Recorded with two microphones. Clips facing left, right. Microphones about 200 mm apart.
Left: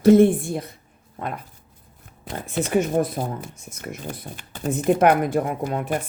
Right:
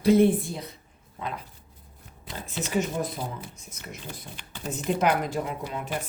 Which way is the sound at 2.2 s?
55° left (ahead or behind).